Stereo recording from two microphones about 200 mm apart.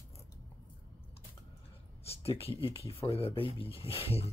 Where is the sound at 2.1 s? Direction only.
30° left (ahead or behind).